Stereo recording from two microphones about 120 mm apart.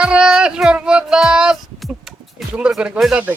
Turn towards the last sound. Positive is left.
turn(degrees=-5)  # may be behind; listen again after turning